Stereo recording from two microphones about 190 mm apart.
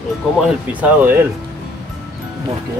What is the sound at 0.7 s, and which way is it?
Speech, 10° right (ahead or behind).